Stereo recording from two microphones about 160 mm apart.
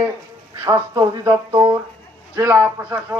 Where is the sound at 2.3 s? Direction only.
10° right (ahead or behind).